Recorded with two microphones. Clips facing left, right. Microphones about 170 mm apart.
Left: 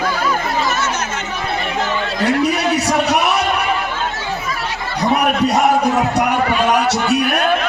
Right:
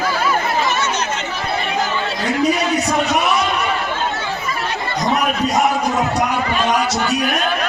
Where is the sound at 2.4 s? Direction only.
75° left (ahead or behind).